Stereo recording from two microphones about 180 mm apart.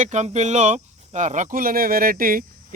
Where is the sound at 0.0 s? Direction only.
40° right (ahead or behind).